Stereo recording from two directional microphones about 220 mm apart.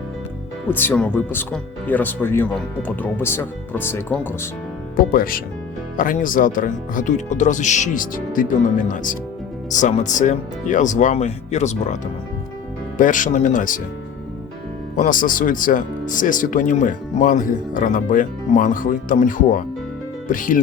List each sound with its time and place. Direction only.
0.7 s speech: 10° left (ahead or behind)
5.1 s speech: 40° left (ahead or behind)
13.0 s speech: 35° left (ahead or behind)
14.9 s speech: 40° left (ahead or behind)